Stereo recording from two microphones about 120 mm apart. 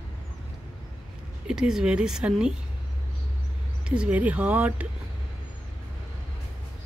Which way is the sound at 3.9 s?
10° right (ahead or behind).